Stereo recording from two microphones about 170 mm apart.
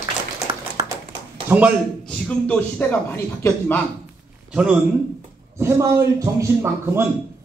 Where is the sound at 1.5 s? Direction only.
15° right (ahead or behind).